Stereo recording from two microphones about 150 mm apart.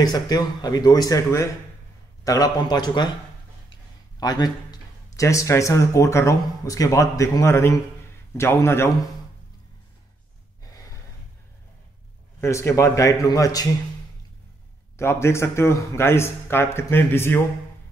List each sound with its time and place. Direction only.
0.0 s speech: 25° left (ahead or behind)
4.2 s speech: 25° left (ahead or behind)
10.6 s gasp: 25° left (ahead or behind)
12.4 s speech: 20° left (ahead or behind)
15.0 s speech: 15° left (ahead or behind)